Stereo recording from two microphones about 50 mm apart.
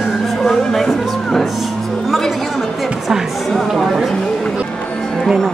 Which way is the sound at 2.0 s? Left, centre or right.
Centre.